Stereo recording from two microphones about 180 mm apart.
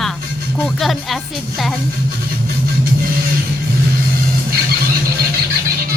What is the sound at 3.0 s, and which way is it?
Music, 55° right (ahead or behind).